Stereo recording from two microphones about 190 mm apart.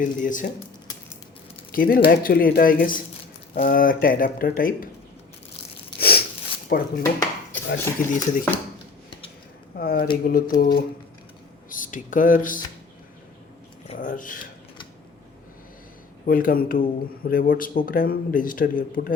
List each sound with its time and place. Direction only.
0.0 s speech: 45° left (ahead or behind)
1.7 s speech: 50° left (ahead or behind)
6.0 s a sound: 55° left (ahead or behind)
6.7 s speech: 50° left (ahead or behind)
9.7 s speech: 50° left (ahead or behind)
13.8 s speech: 40° left (ahead or behind)
16.2 s speech: 50° left (ahead or behind)